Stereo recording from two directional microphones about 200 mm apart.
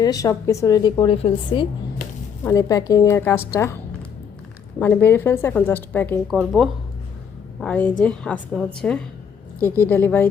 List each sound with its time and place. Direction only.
0.0 s a woman's voice: 15° left (ahead or behind)
2.4 s a woman's voice: 15° left (ahead or behind)
4.8 s a woman's voice: 10° left (ahead or behind)